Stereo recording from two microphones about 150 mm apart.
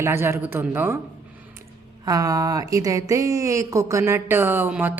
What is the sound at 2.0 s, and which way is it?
Speech, 25° right (ahead or behind).